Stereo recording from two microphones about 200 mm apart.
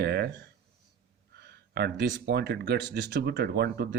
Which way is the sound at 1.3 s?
55° right (ahead or behind).